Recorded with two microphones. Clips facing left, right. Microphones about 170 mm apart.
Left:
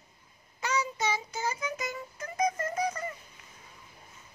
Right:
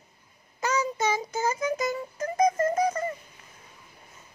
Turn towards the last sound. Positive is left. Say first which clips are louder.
# right 7 dB
turn(degrees=-45)  # may be behind; listen again after turning